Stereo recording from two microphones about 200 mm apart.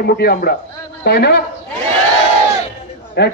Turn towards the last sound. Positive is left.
turn(degrees=55)  # may be behind; listen again after turning